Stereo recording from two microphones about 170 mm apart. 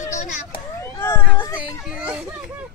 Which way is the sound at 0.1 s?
45° left (ahead or behind).